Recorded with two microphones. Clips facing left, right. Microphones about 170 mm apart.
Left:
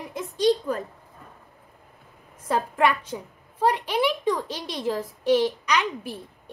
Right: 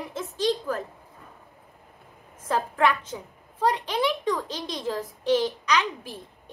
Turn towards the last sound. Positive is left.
turn(degrees=10)  # may be behind; listen again after turning